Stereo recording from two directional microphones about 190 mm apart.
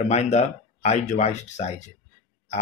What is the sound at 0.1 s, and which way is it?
Speech, 35° left (ahead or behind).